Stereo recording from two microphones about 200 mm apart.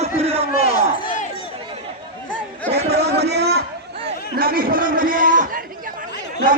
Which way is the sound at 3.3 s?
55° right (ahead or behind).